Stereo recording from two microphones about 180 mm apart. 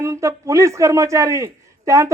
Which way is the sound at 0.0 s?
15° right (ahead or behind).